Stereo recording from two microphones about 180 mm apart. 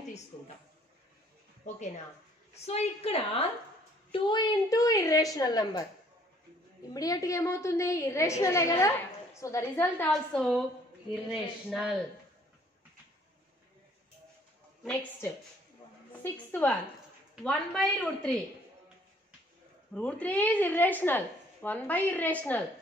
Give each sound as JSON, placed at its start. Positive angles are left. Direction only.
{"t": 2.5, "sound": "a woman's voice", "side_deg": 35}
{"t": 6.9, "sound": "a woman's voice", "side_deg": 20}
{"t": 11.2, "sound": "a woman's voice", "side_deg": -5}
{"t": 14.8, "sound": "a woman's voice", "side_deg": 5}
{"t": 19.9, "sound": "a woman's voice", "side_deg": 5}